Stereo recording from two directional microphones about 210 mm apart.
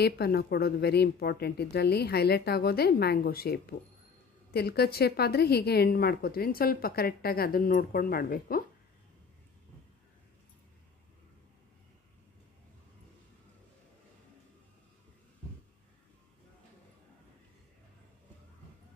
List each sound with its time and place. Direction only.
0.0 s a woman's voice: 50° left (ahead or behind)